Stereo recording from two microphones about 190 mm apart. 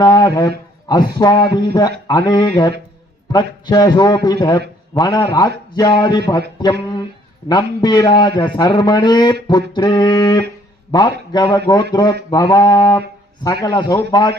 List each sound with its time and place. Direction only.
0.0 s a man's voice: 20° left (ahead or behind)
7.4 s a man's voice: 20° left (ahead or behind)